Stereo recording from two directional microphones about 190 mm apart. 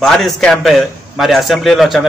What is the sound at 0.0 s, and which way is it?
A man's voice, centre (ahead or behind).